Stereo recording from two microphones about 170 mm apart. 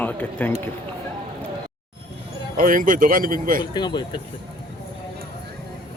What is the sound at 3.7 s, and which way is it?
Speech, 25° left (ahead or behind).